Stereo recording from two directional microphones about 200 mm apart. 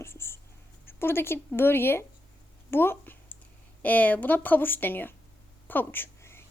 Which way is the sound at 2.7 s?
10° left (ahead or behind).